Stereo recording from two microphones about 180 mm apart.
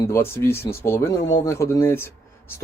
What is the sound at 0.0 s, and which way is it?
Speech, 15° left (ahead or behind).